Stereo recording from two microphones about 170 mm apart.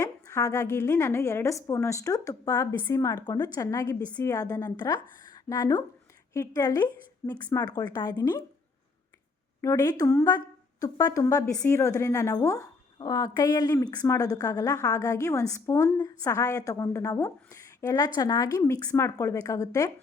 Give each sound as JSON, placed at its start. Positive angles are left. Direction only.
{"t": 0.0, "sound": "speech", "side_deg": 20}
{"t": 9.6, "sound": "speech", "side_deg": 20}